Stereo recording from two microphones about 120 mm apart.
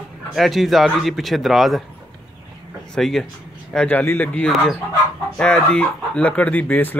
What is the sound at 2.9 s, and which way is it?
Speech, 5° left (ahead or behind).